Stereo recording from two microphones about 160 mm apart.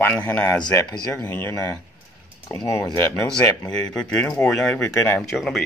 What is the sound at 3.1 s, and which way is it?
Speech, 5° left (ahead or behind).